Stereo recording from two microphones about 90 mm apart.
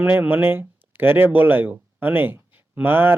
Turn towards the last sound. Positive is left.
turn(degrees=-25)  # may be behind; listen again after turning